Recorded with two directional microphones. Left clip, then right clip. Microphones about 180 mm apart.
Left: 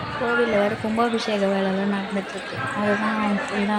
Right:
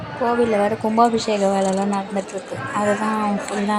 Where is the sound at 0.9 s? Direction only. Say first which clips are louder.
Right 6 dB; 20° right (ahead or behind).